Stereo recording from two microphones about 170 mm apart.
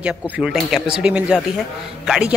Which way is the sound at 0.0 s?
5° right (ahead or behind).